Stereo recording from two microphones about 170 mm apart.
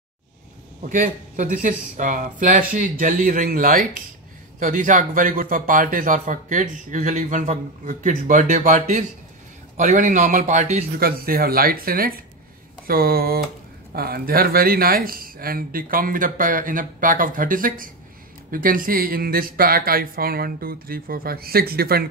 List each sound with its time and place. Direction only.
0.8 s a man's voice: 50° right (ahead or behind)
11.0 s speech: 60° right (ahead or behind)